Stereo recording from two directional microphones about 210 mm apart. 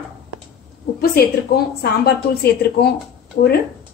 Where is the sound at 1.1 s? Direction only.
50° left (ahead or behind).